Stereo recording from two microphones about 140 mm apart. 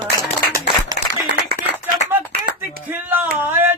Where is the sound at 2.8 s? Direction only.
10° right (ahead or behind).